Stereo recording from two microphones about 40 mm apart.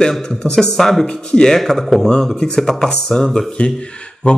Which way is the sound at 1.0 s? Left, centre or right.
Left.